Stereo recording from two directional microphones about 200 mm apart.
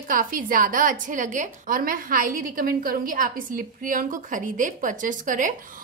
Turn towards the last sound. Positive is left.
turn(degrees=-40)  # may be behind; listen again after turning